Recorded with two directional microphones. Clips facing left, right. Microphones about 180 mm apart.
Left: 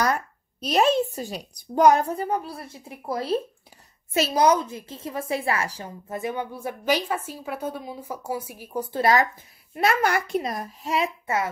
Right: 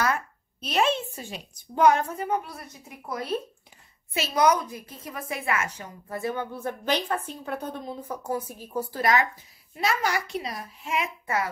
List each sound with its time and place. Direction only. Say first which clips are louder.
0.0 s speech: left 2 dB; 40° left (ahead or behind)
4.1 s a woman's voice: left 7 dB; 40° left (ahead or behind)
4.4 s a woman's voice: left 1 dB; 25° left (ahead or behind)
6.0 s a woman's voice: left 1 dB; 20° left (ahead or behind)
9.8 s a woman's voice: left 4 dB; 55° left (ahead or behind); by 11.4 s 30° left (ahead or behind)